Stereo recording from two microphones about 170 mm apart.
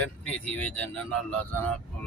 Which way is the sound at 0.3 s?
10° left (ahead or behind).